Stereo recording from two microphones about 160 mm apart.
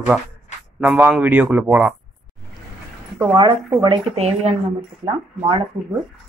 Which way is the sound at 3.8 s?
35° right (ahead or behind).